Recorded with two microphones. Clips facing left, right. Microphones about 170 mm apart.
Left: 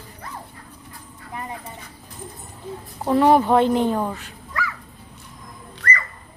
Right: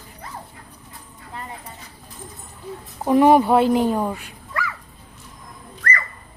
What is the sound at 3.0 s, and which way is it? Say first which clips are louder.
A woman's voice: right 2 dB; 15° right (ahead or behind).